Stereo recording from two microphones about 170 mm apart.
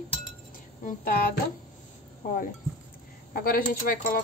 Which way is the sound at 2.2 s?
55° left (ahead or behind).